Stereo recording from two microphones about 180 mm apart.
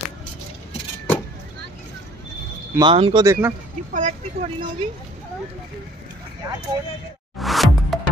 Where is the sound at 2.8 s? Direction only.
30° right (ahead or behind).